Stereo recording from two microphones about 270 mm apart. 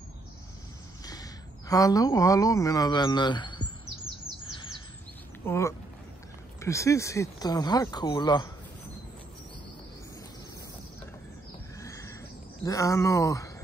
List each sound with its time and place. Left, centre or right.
1.7 s speech: centre
5.4 s speech: centre
11.8 s a sound: centre
12.6 s speech: centre